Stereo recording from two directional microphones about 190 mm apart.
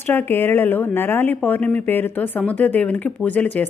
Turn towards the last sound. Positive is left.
turn(degrees=10)  # may be behind; listen again after turning